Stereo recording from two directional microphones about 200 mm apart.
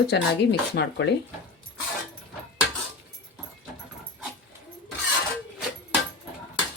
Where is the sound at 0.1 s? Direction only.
60° left (ahead or behind).